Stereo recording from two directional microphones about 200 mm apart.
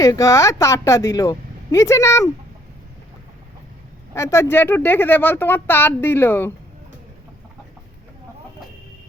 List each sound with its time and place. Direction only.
0.0 s speech: 15° left (ahead or behind)
4.1 s speech: 15° left (ahead or behind)